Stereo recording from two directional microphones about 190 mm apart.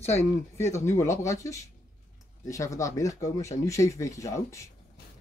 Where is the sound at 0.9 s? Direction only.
15° left (ahead or behind).